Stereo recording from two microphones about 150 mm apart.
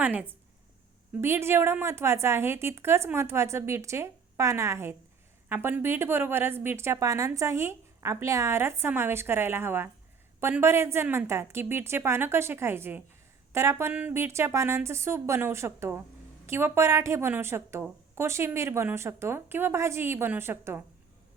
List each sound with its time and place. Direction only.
0.0 s a woman's voice: 10° right (ahead or behind)